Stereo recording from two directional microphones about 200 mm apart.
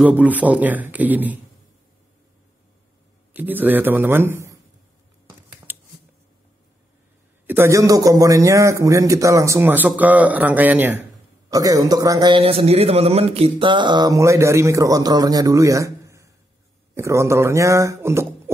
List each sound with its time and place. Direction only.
0.0 s a man's voice: 10° right (ahead or behind)
3.3 s a man's voice: 10° right (ahead or behind)
5.7 s scissors: 10° right (ahead or behind)
7.4 s a man's voice: 10° right (ahead or behind)